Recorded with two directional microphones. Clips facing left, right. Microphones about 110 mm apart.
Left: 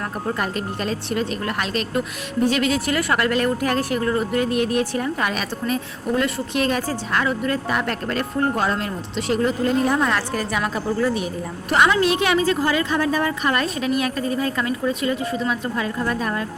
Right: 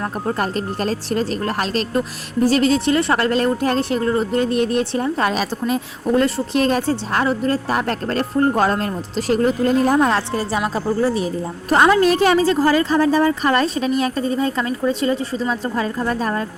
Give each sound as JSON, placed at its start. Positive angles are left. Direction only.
{"t": 0.3, "sound": "a woman's voice", "side_deg": -35}